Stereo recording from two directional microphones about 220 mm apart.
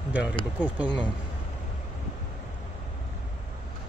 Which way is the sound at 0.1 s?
5° right (ahead or behind).